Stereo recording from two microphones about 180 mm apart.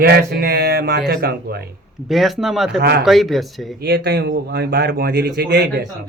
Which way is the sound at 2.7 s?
65° right (ahead or behind).